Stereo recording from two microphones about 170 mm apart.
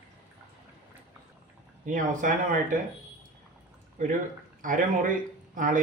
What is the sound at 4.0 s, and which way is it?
A man's voice, 50° right (ahead or behind).